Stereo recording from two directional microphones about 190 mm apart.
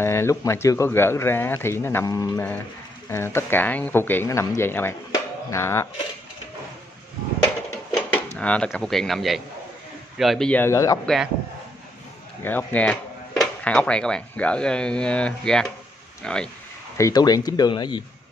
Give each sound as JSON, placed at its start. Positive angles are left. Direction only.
{"t": 0.0, "sound": "speech", "side_deg": 15}
{"t": 5.1, "sound": "music", "side_deg": 15}
{"t": 7.9, "sound": "drawer open or close", "side_deg": 10}
{"t": 8.4, "sound": "speech", "side_deg": 5}
{"t": 12.4, "sound": "speech", "side_deg": 10}
{"t": 16.9, "sound": "speech", "side_deg": 20}